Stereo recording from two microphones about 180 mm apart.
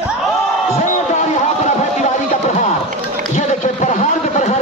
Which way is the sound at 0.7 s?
40° left (ahead or behind).